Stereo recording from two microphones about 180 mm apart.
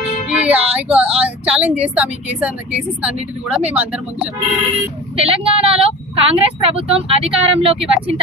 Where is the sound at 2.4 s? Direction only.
10° right (ahead or behind).